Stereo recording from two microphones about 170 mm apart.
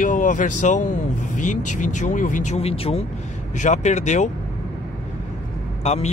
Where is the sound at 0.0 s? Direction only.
50° left (ahead or behind).